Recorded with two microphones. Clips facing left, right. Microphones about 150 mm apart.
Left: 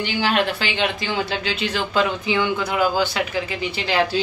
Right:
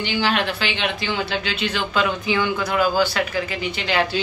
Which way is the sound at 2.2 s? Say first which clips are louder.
Even; 20° left (ahead or behind).